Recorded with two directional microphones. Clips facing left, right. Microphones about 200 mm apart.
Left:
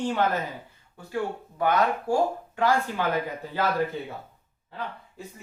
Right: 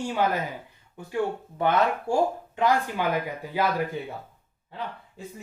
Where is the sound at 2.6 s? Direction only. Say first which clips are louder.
Even; 15° right (ahead or behind).